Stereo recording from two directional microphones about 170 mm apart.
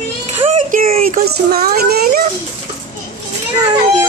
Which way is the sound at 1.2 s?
65° right (ahead or behind).